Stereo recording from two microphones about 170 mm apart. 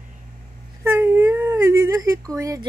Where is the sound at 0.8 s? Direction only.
15° right (ahead or behind).